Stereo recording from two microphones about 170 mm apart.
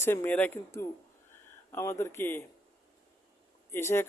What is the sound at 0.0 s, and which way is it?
Speech, 15° left (ahead or behind).